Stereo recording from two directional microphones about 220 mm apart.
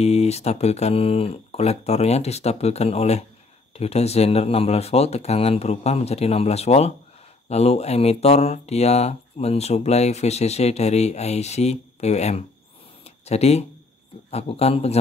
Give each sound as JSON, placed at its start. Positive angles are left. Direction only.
{"t": 0.0, "sound": "speech", "side_deg": 30}
{"t": 13.0, "sound": "a sound", "side_deg": 30}
{"t": 14.3, "sound": "speech", "side_deg": 25}